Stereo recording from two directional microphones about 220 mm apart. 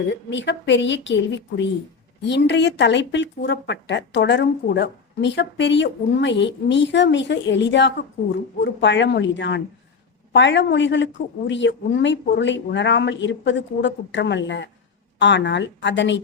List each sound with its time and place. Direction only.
0.1 s a woman's voice: 55° left (ahead or behind)